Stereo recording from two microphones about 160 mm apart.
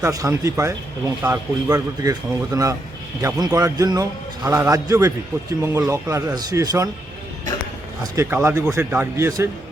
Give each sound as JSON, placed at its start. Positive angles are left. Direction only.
{"t": 0.0, "sound": "speech", "side_deg": -20}
{"t": 8.0, "sound": "a man's voice", "side_deg": -15}